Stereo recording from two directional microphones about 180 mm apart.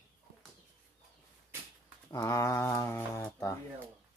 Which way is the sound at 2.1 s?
20° left (ahead or behind).